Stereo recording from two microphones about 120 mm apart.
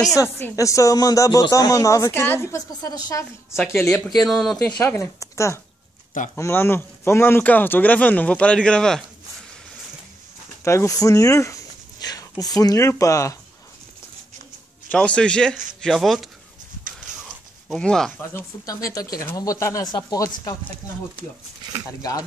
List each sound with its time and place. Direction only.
0.0 s speech: 30° left (ahead or behind)
3.8 s speech: 5° left (ahead or behind)
10.6 s speech: 25° left (ahead or behind)
14.9 s speech: 10° left (ahead or behind)
17.6 s speech: 5° left (ahead or behind)
18.3 s speech: 30° left (ahead or behind)